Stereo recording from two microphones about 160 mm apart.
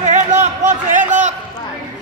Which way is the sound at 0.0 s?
50° right (ahead or behind).